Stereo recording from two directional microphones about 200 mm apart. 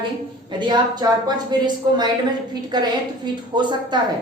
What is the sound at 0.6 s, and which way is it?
A woman's voice, 20° right (ahead or behind).